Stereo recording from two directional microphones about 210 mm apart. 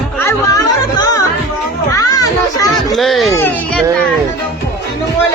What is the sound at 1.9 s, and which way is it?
Children playing, 15° left (ahead or behind).